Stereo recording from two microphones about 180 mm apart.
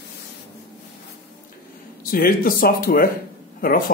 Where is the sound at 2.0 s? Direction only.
55° left (ahead or behind).